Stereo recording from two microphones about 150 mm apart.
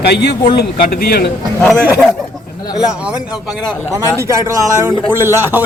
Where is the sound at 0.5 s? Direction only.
80° left.